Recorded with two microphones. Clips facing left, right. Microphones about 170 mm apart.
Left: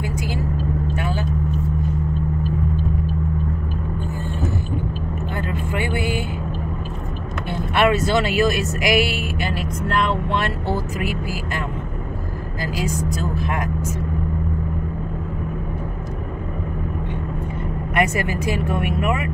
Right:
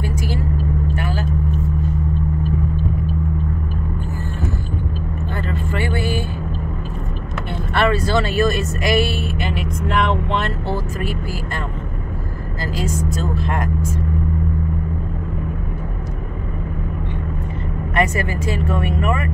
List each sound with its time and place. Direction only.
5.5 s vehicle: 15° left (ahead or behind)
7.7 s speech: 20° left (ahead or behind)
10.4 s speech: 10° left (ahead or behind)
17.9 s speech: 20° left (ahead or behind)